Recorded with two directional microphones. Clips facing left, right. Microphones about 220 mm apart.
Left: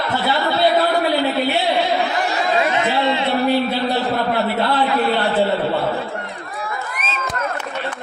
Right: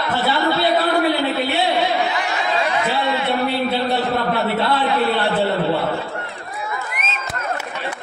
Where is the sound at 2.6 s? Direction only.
25° left (ahead or behind).